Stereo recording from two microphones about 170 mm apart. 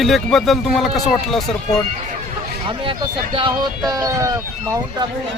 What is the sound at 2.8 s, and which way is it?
Speech, 30° right (ahead or behind).